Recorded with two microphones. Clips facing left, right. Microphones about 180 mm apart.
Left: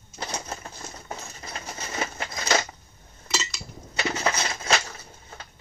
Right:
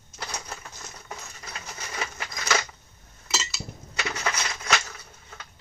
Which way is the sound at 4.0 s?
30° left (ahead or behind).